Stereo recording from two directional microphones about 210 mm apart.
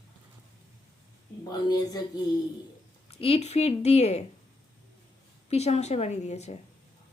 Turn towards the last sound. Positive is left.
turn(degrees=30)  # may be behind; listen again after turning